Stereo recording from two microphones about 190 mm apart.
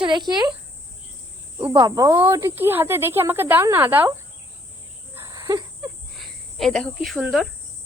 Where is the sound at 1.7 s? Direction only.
20° right (ahead or behind).